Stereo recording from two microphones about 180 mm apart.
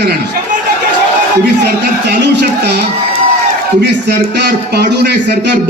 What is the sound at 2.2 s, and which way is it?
A man's voice, 65° right (ahead or behind).